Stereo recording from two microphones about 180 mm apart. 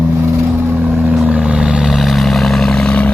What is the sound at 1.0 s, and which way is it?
Vehicle, 5° right (ahead or behind).